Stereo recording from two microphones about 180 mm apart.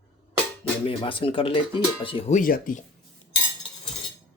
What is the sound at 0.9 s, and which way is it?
Speech, 30° left (ahead or behind).